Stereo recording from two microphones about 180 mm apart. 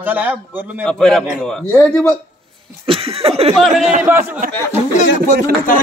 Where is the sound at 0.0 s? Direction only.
10° right (ahead or behind).